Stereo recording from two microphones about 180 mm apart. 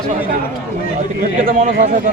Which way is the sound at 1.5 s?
50° right (ahead or behind).